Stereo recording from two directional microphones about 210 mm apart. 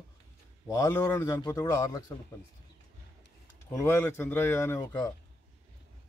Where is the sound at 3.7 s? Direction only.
10° left (ahead or behind).